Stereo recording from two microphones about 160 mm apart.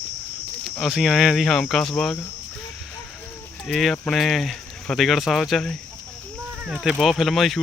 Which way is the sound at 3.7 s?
Centre (ahead or behind).